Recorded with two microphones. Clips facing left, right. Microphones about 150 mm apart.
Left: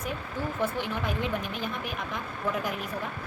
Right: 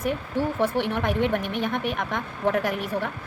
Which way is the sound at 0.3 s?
70° right (ahead or behind).